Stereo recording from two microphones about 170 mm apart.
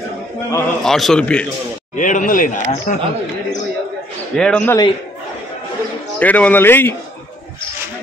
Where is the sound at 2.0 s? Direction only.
50° left (ahead or behind).